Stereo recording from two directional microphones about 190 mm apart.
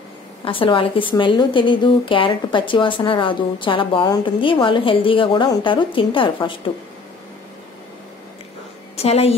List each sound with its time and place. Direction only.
0.5 s a woman's voice: 25° left (ahead or behind)
8.9 s speech: 30° left (ahead or behind)